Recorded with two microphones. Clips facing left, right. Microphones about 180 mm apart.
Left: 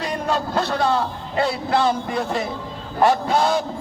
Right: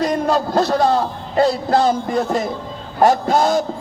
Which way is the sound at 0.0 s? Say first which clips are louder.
Right 6 dB; 40° right (ahead or behind).